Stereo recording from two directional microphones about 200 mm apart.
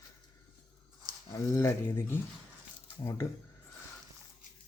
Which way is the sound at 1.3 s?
15° left (ahead or behind).